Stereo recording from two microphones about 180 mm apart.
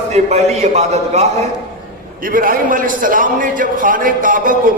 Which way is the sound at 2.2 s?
50° right (ahead or behind).